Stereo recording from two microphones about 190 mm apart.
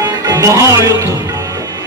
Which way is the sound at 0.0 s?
20° right (ahead or behind).